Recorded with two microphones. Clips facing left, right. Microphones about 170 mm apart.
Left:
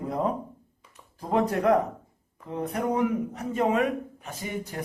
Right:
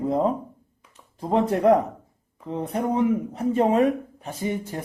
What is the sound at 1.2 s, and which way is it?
Speech, 25° right (ahead or behind).